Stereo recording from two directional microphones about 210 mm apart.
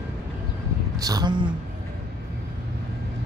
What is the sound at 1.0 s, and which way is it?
Speech, 20° right (ahead or behind).